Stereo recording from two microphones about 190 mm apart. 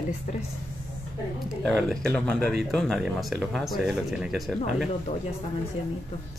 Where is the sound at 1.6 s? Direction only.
5° left (ahead or behind).